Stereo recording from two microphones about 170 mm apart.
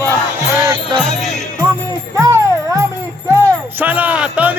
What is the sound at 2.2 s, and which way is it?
Music, 20° right (ahead or behind).